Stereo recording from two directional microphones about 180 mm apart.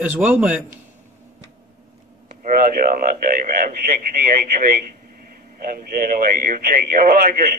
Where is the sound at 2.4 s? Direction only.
55° right (ahead or behind).